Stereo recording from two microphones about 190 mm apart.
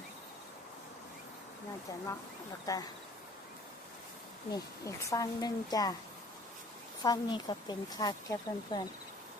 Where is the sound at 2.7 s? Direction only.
20° left (ahead or behind).